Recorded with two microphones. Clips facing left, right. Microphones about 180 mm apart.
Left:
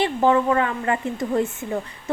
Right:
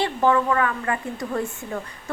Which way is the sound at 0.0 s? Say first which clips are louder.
Left 2 dB; 20° left (ahead or behind).